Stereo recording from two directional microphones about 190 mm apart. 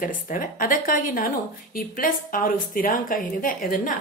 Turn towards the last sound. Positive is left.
turn(degrees=45)  # may be behind; listen again after turning